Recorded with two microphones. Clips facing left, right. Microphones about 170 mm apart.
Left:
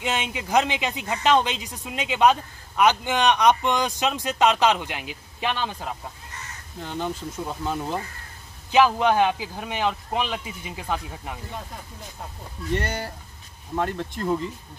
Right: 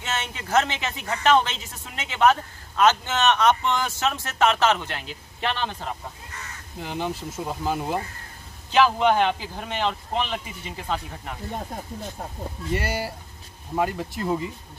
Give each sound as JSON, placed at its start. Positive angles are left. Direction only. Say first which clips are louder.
{"t": 0.0, "sound": "speech", "louder": "left 3 dB", "side_deg": 15}
{"t": 6.8, "sound": "speech", "louder": "even", "side_deg": -10}
{"t": 8.7, "sound": "speech", "louder": "left 1 dB", "side_deg": 10}
{"t": 12.7, "sound": "speech", "louder": "even", "side_deg": -5}